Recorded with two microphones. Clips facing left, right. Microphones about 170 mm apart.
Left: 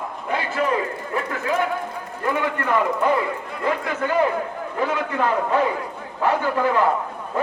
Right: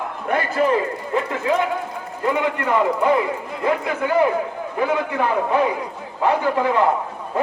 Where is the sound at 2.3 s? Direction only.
15° right (ahead or behind).